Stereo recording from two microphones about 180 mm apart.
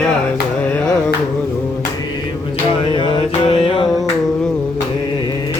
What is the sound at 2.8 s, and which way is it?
Music, 30° left (ahead or behind).